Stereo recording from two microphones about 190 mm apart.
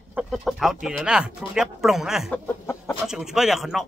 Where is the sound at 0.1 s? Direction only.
5° right (ahead or behind).